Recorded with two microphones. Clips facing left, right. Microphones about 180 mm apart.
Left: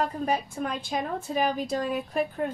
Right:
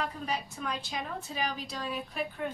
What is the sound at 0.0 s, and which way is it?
A woman's voice, 50° left (ahead or behind).